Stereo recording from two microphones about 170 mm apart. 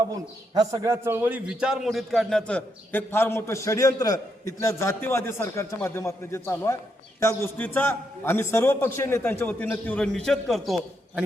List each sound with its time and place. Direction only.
0.5 s a man's voice: 20° right (ahead or behind); by 11.2 s centre (ahead or behind)